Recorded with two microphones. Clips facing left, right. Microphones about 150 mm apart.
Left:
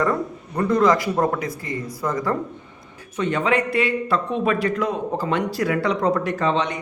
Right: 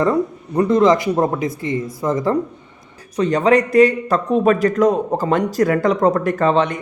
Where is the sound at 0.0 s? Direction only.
20° right (ahead or behind).